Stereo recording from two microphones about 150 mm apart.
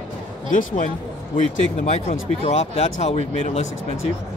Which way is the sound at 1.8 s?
45° left (ahead or behind).